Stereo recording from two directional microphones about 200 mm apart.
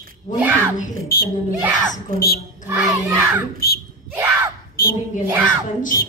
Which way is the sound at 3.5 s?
50° left (ahead or behind).